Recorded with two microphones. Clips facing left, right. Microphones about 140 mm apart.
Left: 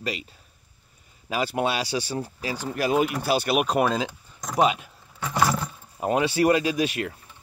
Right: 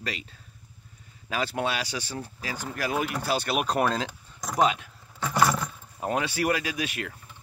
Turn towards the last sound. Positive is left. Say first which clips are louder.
# left 7 dB
turn(degrees=20)  # may be behind; listen again after turning